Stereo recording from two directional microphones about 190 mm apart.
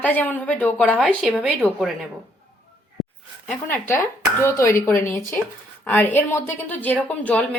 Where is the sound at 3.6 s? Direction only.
10° left (ahead or behind).